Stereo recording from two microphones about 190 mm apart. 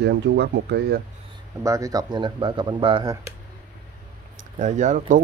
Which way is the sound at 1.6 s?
15° right (ahead or behind).